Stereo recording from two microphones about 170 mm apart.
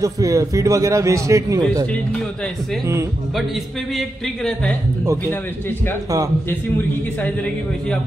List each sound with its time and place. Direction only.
0.0 s a man's voice: 20° right (ahead or behind)